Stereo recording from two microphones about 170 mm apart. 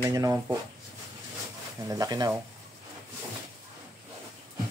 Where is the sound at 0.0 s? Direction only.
20° right (ahead or behind).